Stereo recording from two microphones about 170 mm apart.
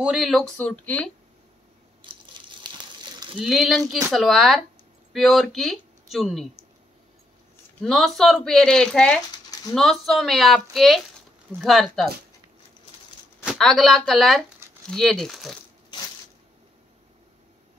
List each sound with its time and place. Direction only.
0.0 s speech: 5° right (ahead or behind)
3.3 s speech: centre (ahead or behind)
7.8 s speech: centre (ahead or behind)
9.5 s a sound: 20° left (ahead or behind)
9.8 s speech: centre (ahead or behind)
13.5 s speech: centre (ahead or behind)